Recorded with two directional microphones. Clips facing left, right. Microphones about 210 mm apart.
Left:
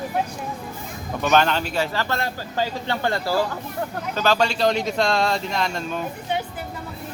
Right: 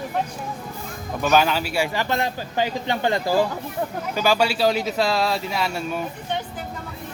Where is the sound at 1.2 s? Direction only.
5° right (ahead or behind).